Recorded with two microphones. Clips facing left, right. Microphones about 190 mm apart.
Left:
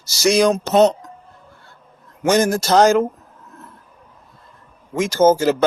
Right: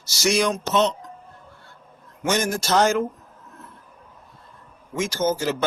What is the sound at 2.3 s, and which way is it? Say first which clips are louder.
Speech: left 7 dB; 40° left (ahead or behind).